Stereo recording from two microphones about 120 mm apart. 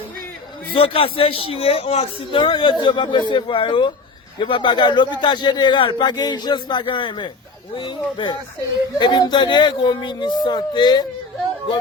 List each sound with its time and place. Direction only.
0.7 s a man's voice: 50° left (ahead or behind)
2.4 s a man's voice: 40° left (ahead or behind)